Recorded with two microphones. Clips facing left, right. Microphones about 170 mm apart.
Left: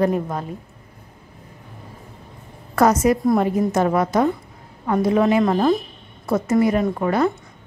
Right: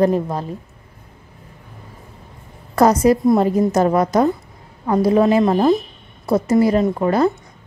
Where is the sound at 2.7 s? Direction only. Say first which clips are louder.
Right 3 dB; 35° right (ahead or behind).